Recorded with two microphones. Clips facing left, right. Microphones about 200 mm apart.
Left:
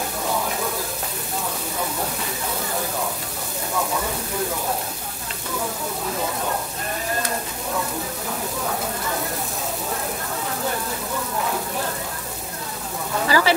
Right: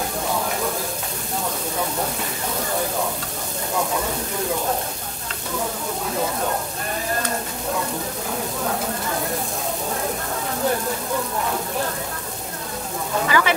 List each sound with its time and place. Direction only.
13.3 s speech: 35° left (ahead or behind)